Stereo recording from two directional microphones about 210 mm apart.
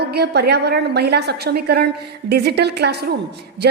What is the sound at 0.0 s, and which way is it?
A woman's voice, 50° right (ahead or behind).